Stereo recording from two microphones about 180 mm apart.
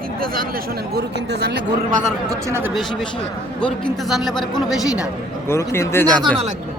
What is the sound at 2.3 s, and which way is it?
Speech, 15° right (ahead or behind).